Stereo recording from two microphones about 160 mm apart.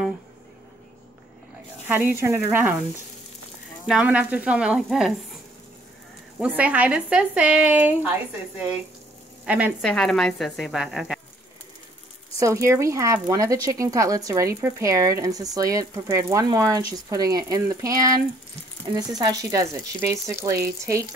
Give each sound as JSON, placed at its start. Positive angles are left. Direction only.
{"t": 1.9, "sound": "a woman's voice", "side_deg": -10}
{"t": 3.8, "sound": "a woman's voice", "side_deg": -5}
{"t": 6.4, "sound": "a woman's voice", "side_deg": -10}
{"t": 9.8, "sound": "a woman's voice", "side_deg": 5}
{"t": 12.4, "sound": "speech", "side_deg": -20}